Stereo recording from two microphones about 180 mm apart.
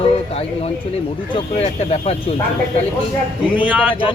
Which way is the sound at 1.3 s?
35° left (ahead or behind).